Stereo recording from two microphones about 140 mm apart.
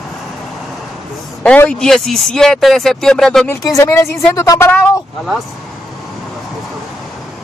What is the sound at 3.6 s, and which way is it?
Speech, 20° left (ahead or behind).